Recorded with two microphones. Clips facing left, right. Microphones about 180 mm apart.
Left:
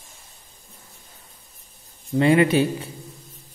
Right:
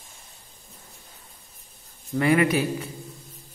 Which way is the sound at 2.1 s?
25° left (ahead or behind).